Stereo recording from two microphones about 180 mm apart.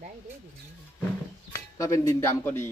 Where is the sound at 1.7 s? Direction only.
15° left (ahead or behind).